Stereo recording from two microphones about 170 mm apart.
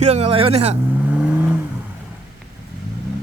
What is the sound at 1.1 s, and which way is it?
Vehicle, 10° right (ahead or behind).